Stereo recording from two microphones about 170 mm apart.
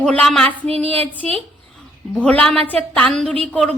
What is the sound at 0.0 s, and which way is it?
A woman's voice, 5° left (ahead or behind).